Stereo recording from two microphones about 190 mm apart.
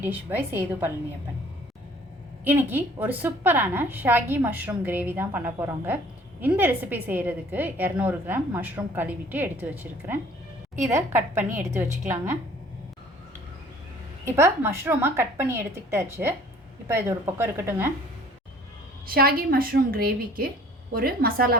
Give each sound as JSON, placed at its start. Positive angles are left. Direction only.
{"t": 0.0, "sound": "a woman's voice", "side_deg": -10}
{"t": 2.4, "sound": "a woman's voice", "side_deg": -10}
{"t": 14.3, "sound": "a woman's voice", "side_deg": -15}
{"t": 19.0, "sound": "a woman's voice", "side_deg": -50}